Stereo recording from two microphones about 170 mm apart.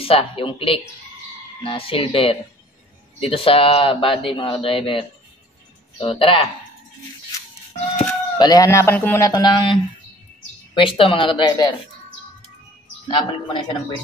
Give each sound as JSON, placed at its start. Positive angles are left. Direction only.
{"t": 0.0, "sound": "speech", "side_deg": 35}
{"t": 8.1, "sound": "speech", "side_deg": 20}
{"t": 13.1, "sound": "speech", "side_deg": 25}